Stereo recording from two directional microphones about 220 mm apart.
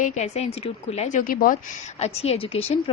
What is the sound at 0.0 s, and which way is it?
Speech, 30° left (ahead or behind).